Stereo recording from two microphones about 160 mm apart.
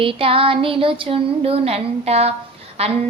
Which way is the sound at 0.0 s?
35° right (ahead or behind).